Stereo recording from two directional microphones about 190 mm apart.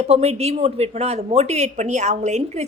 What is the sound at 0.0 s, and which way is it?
A woman's voice, 35° right (ahead or behind).